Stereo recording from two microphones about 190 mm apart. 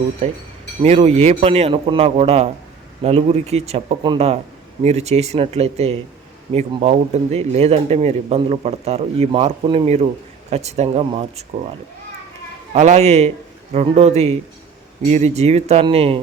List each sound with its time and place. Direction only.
0.2 s a man's voice: 30° right (ahead or behind)
12.7 s a man's voice: 40° right (ahead or behind)